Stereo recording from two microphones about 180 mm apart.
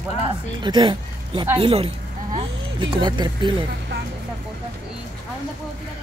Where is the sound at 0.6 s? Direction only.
25° right (ahead or behind).